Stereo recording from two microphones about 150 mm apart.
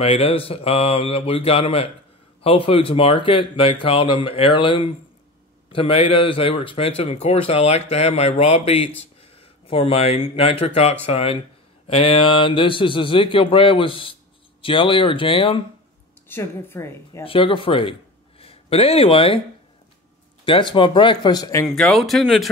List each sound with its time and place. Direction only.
0.0 s speech: 40° left (ahead or behind)
16.3 s a woman's voice: 15° left (ahead or behind)
17.2 s speech: 35° left (ahead or behind)
20.4 s speech: 35° left (ahead or behind)
21.6 s speech: centre (ahead or behind)